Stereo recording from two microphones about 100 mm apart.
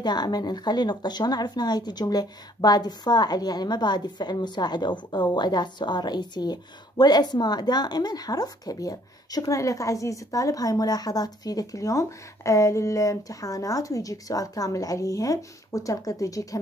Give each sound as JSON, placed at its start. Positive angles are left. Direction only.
{"t": 0.0, "sound": "speech", "side_deg": 45}